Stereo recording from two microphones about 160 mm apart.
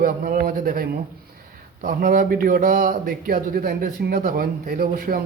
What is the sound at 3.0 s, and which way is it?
Speech, 65° right (ahead or behind).